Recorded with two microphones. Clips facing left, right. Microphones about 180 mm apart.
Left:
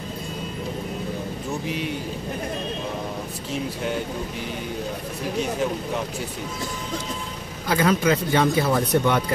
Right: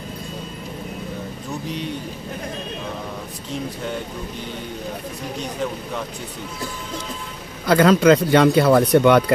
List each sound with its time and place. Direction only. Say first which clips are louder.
7.6 s speech: right 7 dB; 75° right (ahead or behind)